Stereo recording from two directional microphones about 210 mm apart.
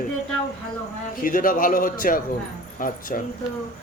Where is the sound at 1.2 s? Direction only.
40° left (ahead or behind).